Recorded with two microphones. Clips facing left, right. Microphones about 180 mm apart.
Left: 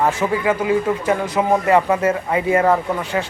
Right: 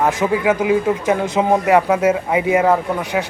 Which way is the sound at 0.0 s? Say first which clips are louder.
Right 2 dB; 15° right (ahead or behind).